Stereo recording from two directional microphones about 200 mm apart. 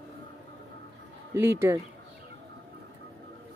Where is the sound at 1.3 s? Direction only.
10° right (ahead or behind).